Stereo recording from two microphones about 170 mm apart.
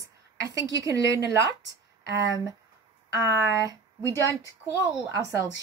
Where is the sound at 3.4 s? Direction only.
20° right (ahead or behind).